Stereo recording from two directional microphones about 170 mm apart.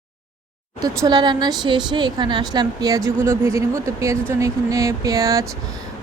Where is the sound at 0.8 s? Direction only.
25° right (ahead or behind).